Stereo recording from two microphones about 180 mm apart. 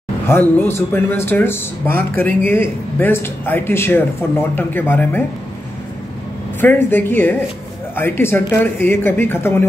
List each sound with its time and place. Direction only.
0.3 s speech: 15° left (ahead or behind)
6.6 s speech: 10° left (ahead or behind)